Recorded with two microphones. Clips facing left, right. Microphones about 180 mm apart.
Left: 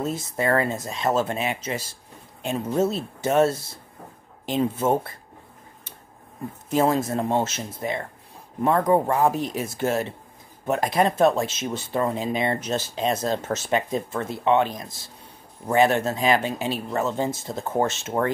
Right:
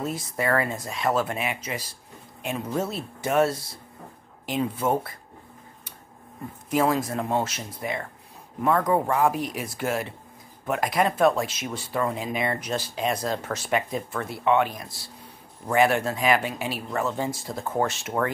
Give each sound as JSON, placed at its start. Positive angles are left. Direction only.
{"t": 0.0, "sound": "speech", "side_deg": 25}
{"t": 6.7, "sound": "speech", "side_deg": 25}